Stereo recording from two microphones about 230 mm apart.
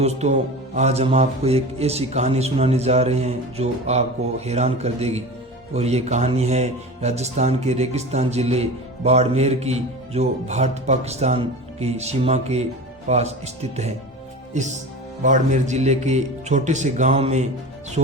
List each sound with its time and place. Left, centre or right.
0.0 s speech: right